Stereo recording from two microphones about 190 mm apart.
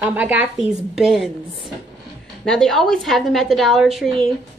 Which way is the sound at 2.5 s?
Centre (ahead or behind).